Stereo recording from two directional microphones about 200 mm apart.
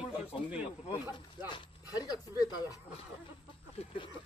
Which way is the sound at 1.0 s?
20° left (ahead or behind).